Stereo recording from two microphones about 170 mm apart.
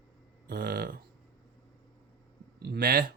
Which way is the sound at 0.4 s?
65° right (ahead or behind).